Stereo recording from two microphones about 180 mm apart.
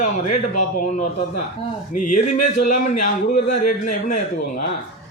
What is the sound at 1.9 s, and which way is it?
Speech, 45° left (ahead or behind).